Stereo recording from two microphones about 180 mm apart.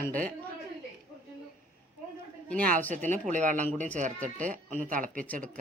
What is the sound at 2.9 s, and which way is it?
Speech, 45° right (ahead or behind).